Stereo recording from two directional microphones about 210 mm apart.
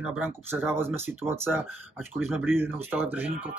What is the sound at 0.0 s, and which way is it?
Speech, 10° right (ahead or behind).